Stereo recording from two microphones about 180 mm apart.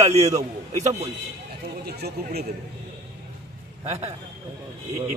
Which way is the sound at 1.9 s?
65° right (ahead or behind).